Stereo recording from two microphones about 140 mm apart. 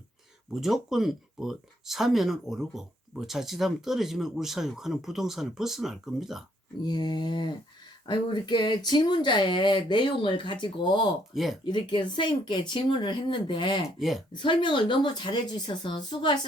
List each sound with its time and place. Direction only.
0.5 s speech: centre (ahead or behind)
6.8 s speech: 30° left (ahead or behind)